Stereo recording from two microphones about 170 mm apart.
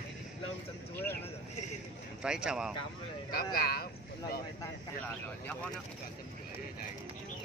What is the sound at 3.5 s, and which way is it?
Speech, 65° left (ahead or behind).